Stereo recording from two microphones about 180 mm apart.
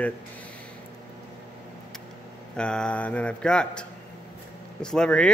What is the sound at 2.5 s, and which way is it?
Speech, 5° left (ahead or behind).